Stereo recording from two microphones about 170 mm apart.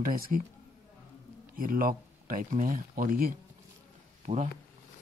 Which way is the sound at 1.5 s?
55° right (ahead or behind).